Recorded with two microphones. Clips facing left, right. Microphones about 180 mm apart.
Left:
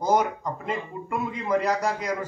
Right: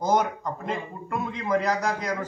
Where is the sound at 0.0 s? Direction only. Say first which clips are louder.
Left 1 dB; 10° left (ahead or behind).